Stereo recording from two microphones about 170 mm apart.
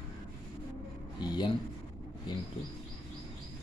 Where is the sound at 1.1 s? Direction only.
25° left (ahead or behind).